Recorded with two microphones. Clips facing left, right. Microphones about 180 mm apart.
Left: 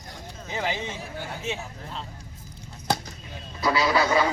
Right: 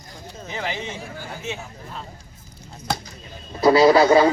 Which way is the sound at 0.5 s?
20° left (ahead or behind).